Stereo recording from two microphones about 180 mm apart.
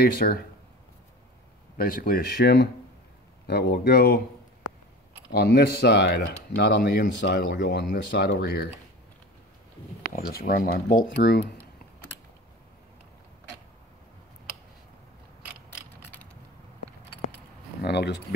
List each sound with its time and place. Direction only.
0.0 s speech: 55° left (ahead or behind)
1.8 s speech: 55° left (ahead or behind)
5.3 s speech: 60° left (ahead or behind)
10.1 s speech: 55° left (ahead or behind)
17.8 s a sound: 65° left (ahead or behind)